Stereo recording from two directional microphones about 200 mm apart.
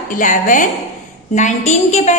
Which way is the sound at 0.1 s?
40° left (ahead or behind).